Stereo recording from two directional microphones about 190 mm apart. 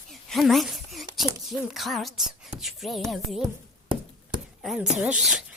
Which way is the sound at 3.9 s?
25° right (ahead or behind).